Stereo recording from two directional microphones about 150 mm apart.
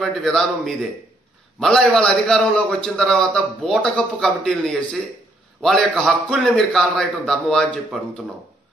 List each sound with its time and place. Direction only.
0.0 s a man's voice: 5° left (ahead or behind)